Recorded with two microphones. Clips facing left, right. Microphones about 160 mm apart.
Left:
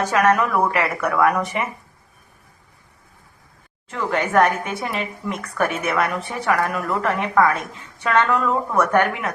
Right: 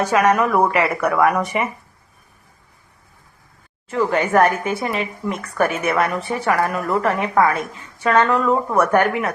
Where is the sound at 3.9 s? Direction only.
5° right (ahead or behind).